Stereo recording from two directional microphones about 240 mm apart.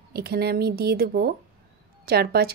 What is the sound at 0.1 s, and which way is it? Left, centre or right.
Speech, right.